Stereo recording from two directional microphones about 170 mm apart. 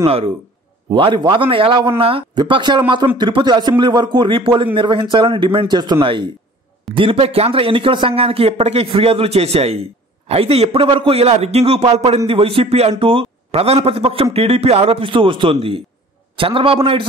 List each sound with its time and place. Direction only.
0.0 s a man's voice: 35° right (ahead or behind)